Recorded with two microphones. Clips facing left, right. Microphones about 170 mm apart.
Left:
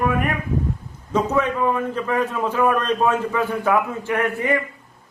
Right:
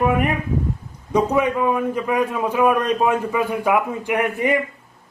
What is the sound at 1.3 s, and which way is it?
A man's voice, 10° right (ahead or behind).